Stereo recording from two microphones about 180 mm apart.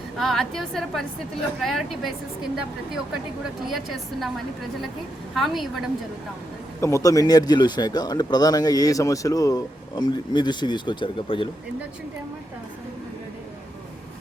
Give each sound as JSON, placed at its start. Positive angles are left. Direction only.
{"t": 0.2, "sound": "a woman's voice", "side_deg": 0}
{"t": 3.7, "sound": "a woman's voice", "side_deg": 0}
{"t": 5.3, "sound": "a woman's voice", "side_deg": 0}
{"t": 6.8, "sound": "speech", "side_deg": 15}